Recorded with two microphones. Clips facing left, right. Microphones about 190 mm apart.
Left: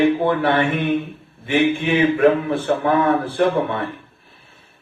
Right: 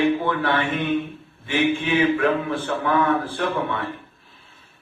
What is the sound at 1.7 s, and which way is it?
Speech, 20° left (ahead or behind).